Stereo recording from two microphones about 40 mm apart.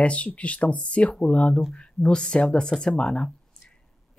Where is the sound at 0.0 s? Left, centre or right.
Left.